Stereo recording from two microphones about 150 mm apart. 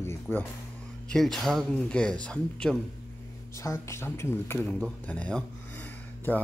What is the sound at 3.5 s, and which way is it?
Speech, 20° left (ahead or behind).